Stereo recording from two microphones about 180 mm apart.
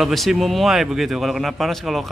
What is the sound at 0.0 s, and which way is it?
Speech, centre (ahead or behind).